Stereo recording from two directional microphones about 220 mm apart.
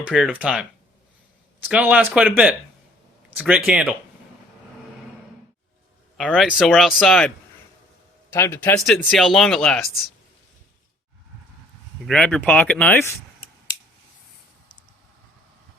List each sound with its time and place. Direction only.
0.0 s speech: 5° right (ahead or behind)
6.1 s speech: centre (ahead or behind)
12.0 s speech: 5° left (ahead or behind)